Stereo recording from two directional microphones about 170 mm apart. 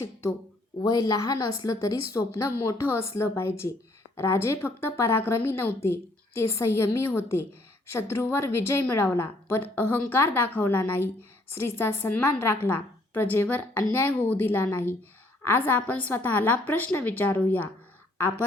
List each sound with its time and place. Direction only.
0.8 s a woman's voice: 20° left (ahead or behind)